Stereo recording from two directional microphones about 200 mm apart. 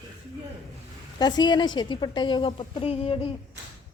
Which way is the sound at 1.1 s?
20° left (ahead or behind).